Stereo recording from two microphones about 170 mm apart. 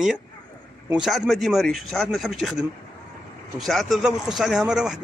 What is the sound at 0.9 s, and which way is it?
A man's voice, 5° right (ahead or behind).